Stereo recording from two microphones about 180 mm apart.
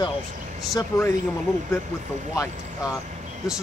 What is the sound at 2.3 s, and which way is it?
Speech, 20° left (ahead or behind).